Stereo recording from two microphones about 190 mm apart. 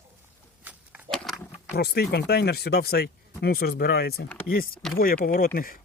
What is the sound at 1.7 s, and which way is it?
Speech, 55° left (ahead or behind).